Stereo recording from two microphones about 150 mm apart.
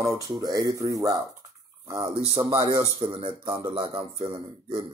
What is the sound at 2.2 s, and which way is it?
Speech, 25° right (ahead or behind).